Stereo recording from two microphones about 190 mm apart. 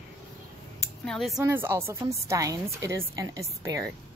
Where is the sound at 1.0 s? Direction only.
Centre (ahead or behind).